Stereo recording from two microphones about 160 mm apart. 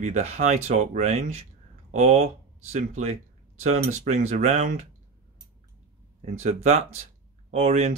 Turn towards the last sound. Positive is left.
turn(degrees=-40)  # may be behind; listen again after turning